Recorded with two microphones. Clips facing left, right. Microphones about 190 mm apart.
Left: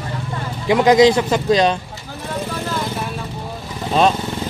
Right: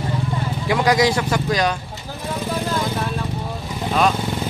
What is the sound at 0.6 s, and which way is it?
A man's voice, 20° left (ahead or behind).